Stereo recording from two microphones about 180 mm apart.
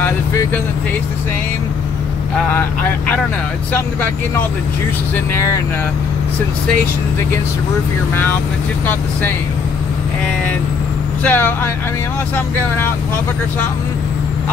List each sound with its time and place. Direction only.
0.0 s vehicle: 15° left (ahead or behind)
5.1 s speech: 15° left (ahead or behind)
11.2 s speech: 10° left (ahead or behind)